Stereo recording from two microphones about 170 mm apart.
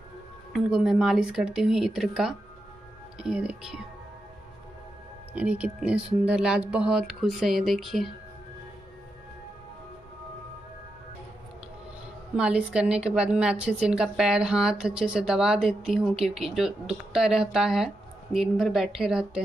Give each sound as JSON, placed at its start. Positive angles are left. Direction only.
{"t": 0.5, "sound": "a woman's voice", "side_deg": 0}
{"t": 5.3, "sound": "a woman's voice", "side_deg": -5}
{"t": 12.4, "sound": "a woman's voice", "side_deg": -5}